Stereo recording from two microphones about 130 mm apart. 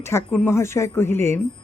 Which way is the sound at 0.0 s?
20° left (ahead or behind).